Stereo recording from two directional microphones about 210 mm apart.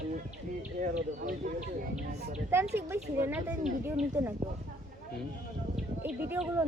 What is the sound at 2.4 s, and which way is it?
A woman's voice, 10° right (ahead or behind).